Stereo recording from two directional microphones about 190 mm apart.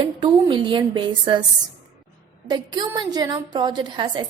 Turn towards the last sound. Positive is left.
turn(degrees=-25)  # may be behind; listen again after turning